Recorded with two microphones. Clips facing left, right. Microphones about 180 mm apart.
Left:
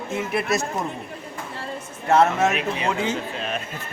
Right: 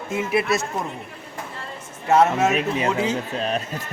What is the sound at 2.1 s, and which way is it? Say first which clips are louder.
Speech: right 1 dB; 5° right (ahead or behind).